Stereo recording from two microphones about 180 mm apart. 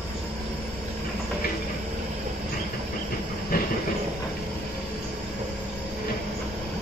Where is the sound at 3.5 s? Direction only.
55° left (ahead or behind).